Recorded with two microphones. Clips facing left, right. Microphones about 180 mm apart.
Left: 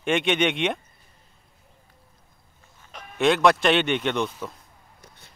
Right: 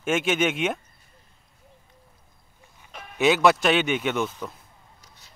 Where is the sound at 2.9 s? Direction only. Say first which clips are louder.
Even; 5° right (ahead or behind).